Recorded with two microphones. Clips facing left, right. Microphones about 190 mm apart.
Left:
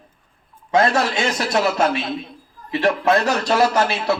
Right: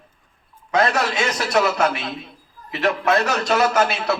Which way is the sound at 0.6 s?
30° left (ahead or behind).